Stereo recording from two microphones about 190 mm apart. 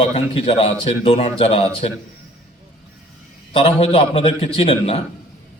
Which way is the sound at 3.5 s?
30° left (ahead or behind).